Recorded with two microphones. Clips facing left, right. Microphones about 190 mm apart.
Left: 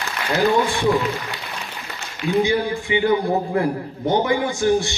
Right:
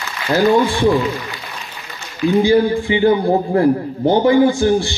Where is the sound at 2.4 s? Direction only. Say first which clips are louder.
Right 7 dB; 30° right (ahead or behind).